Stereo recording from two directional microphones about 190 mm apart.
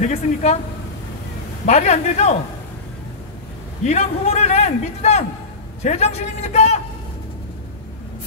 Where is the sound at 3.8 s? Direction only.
35° left (ahead or behind).